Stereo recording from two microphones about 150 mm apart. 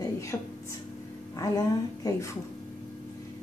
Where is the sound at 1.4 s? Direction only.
25° left (ahead or behind).